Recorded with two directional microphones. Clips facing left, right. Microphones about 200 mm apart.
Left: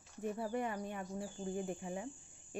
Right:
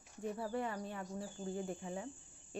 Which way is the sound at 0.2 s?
15° left (ahead or behind).